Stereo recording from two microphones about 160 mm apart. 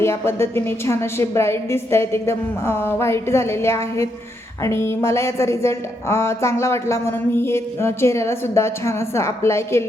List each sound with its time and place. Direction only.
0.0 s speech: 15° left (ahead or behind)